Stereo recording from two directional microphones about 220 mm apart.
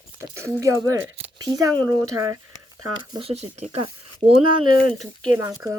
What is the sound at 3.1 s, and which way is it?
Speech, 25° right (ahead or behind).